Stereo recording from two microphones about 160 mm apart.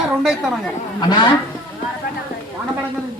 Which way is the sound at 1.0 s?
25° left (ahead or behind).